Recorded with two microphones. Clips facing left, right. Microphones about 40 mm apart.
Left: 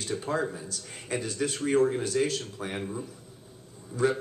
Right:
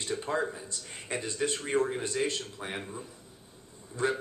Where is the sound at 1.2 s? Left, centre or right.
Right.